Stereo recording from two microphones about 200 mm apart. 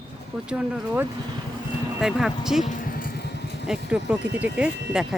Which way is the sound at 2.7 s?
45° left (ahead or behind).